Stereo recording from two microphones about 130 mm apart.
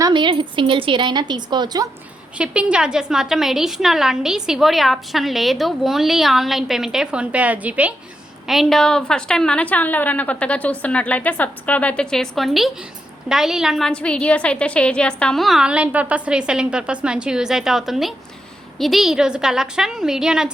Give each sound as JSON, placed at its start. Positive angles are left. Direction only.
{"t": 0.0, "sound": "a woman's voice", "side_deg": -35}
{"t": 2.4, "sound": "a woman's voice", "side_deg": -10}
{"t": 8.4, "sound": "a woman's voice", "side_deg": 0}